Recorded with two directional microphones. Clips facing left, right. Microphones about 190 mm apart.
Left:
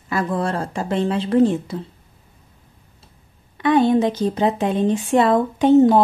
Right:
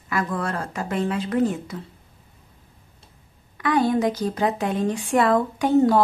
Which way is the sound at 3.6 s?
25° left (ahead or behind).